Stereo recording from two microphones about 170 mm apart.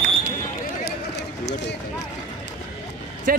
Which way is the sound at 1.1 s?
90° left.